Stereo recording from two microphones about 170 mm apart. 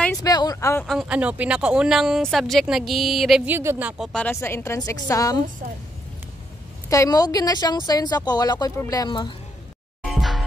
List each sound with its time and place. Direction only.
0.2 s a woman's voice: 20° left (ahead or behind)
0.8 s speech: 5° right (ahead or behind)
4.0 s a woman's voice: 5° left (ahead or behind)
6.9 s a woman's voice: 20° left (ahead or behind)
10.0 s music: centre (ahead or behind)